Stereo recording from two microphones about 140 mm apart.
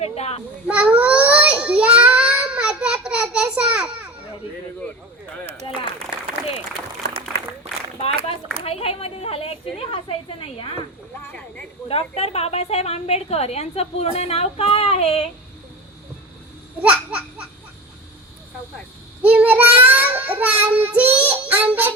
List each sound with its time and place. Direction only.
0.0 s a woman's voice: 45° left (ahead or behind)
0.7 s child singing: 10° right (ahead or behind)
7.1 s applause: 45° right (ahead or behind)
8.6 s a woman's voice: 45° left (ahead or behind)
11.2 s speech: 10° left (ahead or behind)
11.9 s a woman's voice: 45° left (ahead or behind)
16.8 s laughter: 10° right (ahead or behind)
19.2 s child singing: 10° right (ahead or behind)